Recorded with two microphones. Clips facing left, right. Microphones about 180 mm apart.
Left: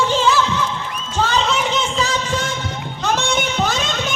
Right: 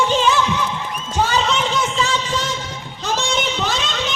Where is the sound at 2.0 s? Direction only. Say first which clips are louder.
Left 1 dB; 45° left (ahead or behind).